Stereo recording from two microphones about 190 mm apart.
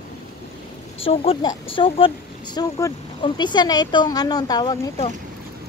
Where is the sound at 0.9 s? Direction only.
30° left (ahead or behind).